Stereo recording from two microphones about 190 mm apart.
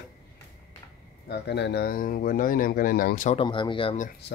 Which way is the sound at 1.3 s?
60° left (ahead or behind).